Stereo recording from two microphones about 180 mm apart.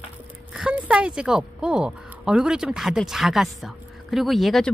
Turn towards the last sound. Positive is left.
turn(degrees=0)  # may be behind; listen again after turning